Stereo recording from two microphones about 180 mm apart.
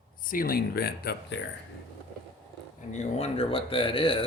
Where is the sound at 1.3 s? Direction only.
80° left.